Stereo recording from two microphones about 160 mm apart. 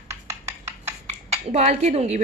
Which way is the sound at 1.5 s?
40° right (ahead or behind).